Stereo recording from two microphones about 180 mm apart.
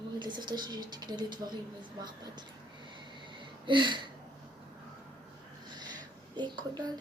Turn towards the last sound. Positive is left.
turn(degrees=-25)  # may be behind; listen again after turning